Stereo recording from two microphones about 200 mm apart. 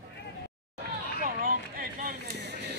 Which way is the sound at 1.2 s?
45° right (ahead or behind).